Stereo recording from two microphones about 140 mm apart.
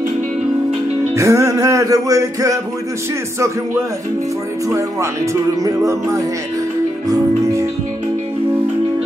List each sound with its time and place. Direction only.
1.1 s speech: 20° right (ahead or behind)
4.6 s speech: 20° right (ahead or behind)
7.1 s music: 20° right (ahead or behind)